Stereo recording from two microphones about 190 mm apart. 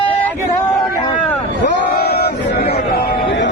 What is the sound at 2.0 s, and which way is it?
Crowd, 55° left (ahead or behind).